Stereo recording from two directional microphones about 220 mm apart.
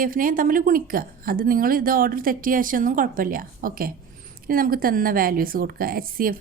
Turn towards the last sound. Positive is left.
turn(degrees=-40)  # may be behind; listen again after turning